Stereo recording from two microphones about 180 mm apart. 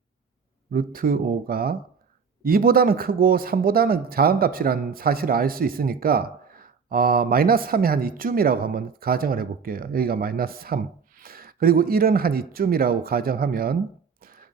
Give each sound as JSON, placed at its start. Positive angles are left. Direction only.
{"t": 0.7, "sound": "speech", "side_deg": -55}
{"t": 14.2, "sound": "music", "side_deg": -55}